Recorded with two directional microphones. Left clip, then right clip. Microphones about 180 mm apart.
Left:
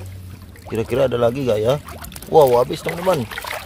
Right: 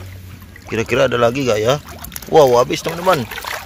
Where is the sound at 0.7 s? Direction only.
5° left (ahead or behind).